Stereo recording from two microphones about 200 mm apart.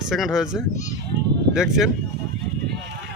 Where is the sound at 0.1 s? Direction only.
Centre (ahead or behind).